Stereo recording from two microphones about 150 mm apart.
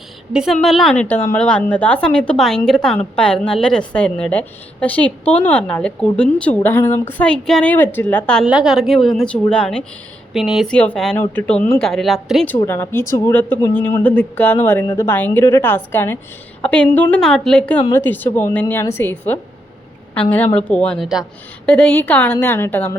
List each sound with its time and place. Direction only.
0.3 s a woman's voice: centre (ahead or behind)
8.4 s a woman's voice: 5° right (ahead or behind)
12.6 s a woman's voice: 15° left (ahead or behind)